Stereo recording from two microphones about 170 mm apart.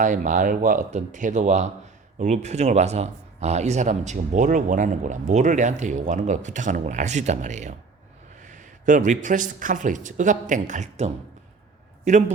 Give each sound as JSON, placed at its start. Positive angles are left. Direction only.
{"t": 0.0, "sound": "speech", "side_deg": -45}